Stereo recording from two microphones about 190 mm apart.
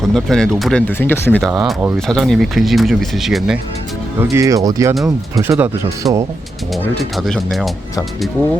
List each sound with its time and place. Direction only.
0.1 s speech: 5° left (ahead or behind)
1.4 s speech: centre (ahead or behind)
4.2 s speech: 15° right (ahead or behind)
7.0 s speech: centre (ahead or behind)